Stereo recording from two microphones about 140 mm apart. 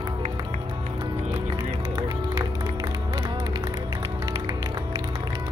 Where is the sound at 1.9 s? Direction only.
30° right (ahead or behind).